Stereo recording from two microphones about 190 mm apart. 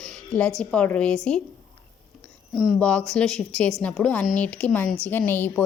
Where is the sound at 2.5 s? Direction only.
Centre (ahead or behind).